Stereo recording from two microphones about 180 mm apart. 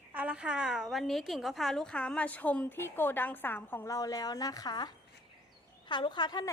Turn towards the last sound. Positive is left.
turn(degrees=25)  # may be behind; listen again after turning